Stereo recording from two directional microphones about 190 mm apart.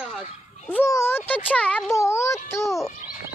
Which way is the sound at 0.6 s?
10° left (ahead or behind).